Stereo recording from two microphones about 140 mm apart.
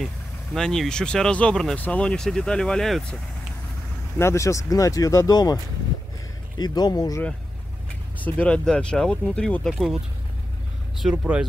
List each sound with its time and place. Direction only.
0.6 s speech: 5° left (ahead or behind)
4.2 s speech: 20° left (ahead or behind)
6.6 s speech: 30° left (ahead or behind)
8.2 s speech: 10° left (ahead or behind)
11.0 s speech: 5° right (ahead or behind)